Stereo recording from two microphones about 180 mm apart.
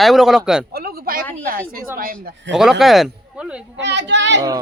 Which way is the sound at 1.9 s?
50° right (ahead or behind).